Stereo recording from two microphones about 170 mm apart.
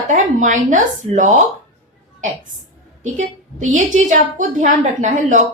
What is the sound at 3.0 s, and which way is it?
A woman's voice, 45° right (ahead or behind).